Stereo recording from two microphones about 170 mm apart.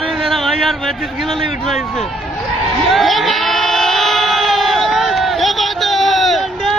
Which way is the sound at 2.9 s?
Centre (ahead or behind).